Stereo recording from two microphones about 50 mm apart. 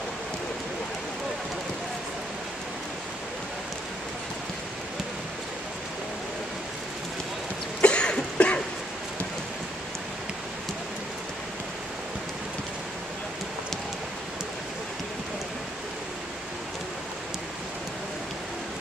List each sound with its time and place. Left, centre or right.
7.8 s cough: left